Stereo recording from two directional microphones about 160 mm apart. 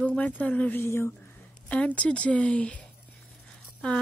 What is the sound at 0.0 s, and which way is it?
Speech, 10° left (ahead or behind).